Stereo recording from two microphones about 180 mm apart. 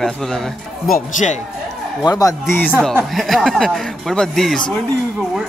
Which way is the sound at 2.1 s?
20° left (ahead or behind).